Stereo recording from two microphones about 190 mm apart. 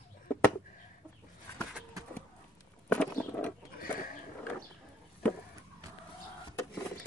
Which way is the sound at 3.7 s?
50° left (ahead or behind).